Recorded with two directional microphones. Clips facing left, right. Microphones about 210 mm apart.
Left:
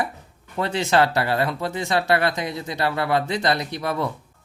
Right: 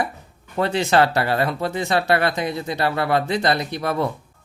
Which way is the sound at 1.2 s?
50° right (ahead or behind).